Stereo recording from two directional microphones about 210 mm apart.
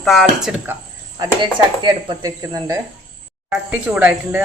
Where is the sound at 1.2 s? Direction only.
20° right (ahead or behind).